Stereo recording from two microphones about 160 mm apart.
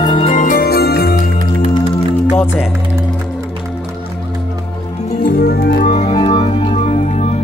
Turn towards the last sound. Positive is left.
turn(degrees=45)  # may be behind; listen again after turning